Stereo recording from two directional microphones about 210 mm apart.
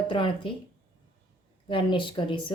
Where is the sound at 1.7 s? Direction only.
25° left (ahead or behind).